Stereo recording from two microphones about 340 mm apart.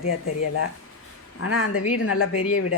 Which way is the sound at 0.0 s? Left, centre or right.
Left.